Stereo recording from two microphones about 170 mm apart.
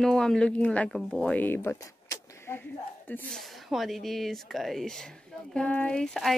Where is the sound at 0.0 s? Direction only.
5° left (ahead or behind).